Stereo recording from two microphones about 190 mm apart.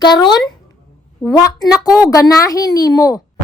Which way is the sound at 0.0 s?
25° left (ahead or behind).